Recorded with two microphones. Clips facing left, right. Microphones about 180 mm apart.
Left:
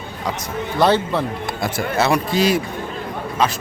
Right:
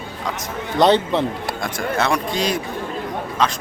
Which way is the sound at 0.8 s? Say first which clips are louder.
Right 1 dB; 20° right (ahead or behind).